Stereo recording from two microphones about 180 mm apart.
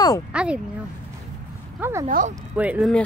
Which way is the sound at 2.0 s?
45° right (ahead or behind).